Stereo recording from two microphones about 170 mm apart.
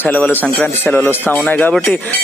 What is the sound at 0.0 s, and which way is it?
Speech, 10° left (ahead or behind).